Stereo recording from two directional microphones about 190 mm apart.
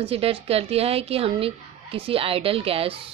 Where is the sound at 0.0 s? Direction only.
30° right (ahead or behind).